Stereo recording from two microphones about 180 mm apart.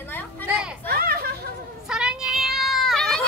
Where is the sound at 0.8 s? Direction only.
55° right (ahead or behind).